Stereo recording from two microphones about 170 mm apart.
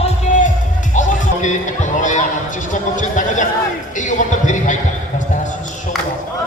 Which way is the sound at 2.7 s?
50° left (ahead or behind).